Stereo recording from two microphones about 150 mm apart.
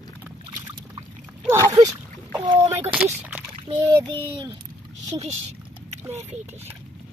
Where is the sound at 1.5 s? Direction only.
20° right (ahead or behind).